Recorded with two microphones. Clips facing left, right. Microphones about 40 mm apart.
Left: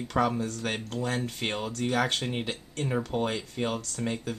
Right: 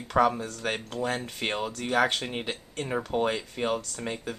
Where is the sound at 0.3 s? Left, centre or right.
Centre.